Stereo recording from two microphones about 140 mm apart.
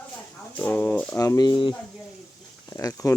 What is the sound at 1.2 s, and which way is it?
Speech, 25° left (ahead or behind).